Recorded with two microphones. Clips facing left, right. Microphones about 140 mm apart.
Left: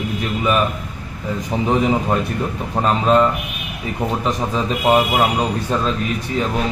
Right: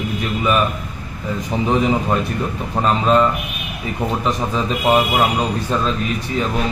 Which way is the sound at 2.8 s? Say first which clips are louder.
Even; 45° left (ahead or behind).